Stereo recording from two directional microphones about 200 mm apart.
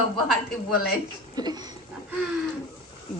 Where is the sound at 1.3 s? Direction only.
20° right (ahead or behind).